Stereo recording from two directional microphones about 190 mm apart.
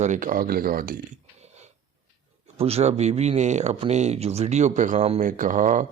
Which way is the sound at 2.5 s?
30° right (ahead or behind).